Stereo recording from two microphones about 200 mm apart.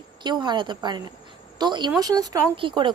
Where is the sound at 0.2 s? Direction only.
20° right (ahead or behind).